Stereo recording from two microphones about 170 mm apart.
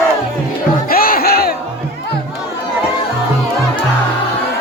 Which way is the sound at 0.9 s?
60° left (ahead or behind).